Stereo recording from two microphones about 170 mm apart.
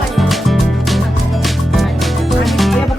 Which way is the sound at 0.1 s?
Centre (ahead or behind).